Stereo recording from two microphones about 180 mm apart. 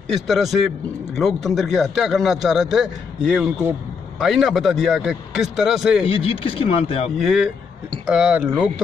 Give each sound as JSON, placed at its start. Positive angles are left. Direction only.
{"t": 0.1, "sound": "a man's voice", "side_deg": 0}
{"t": 6.0, "sound": "speech", "side_deg": 30}
{"t": 7.2, "sound": "a man's voice", "side_deg": 0}